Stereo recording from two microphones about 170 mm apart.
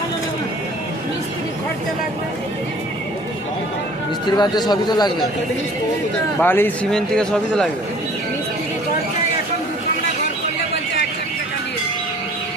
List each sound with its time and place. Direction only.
4.3 s a man's voice: 25° left (ahead or behind)
6.4 s speech: 10° left (ahead or behind)